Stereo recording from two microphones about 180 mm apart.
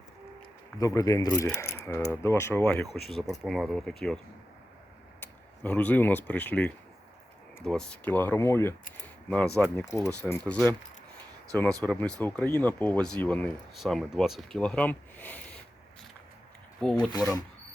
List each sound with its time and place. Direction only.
0.8 s speech: 20° left (ahead or behind); by 4.2 s 5° left (ahead or behind)
5.2 s speech: 10° left (ahead or behind)
9.7 s speech: 15° left (ahead or behind)
16.8 s speech: 5° left (ahead or behind)